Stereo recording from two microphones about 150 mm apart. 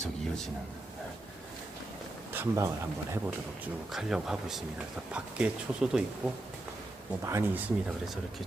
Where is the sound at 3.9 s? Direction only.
5° right (ahead or behind).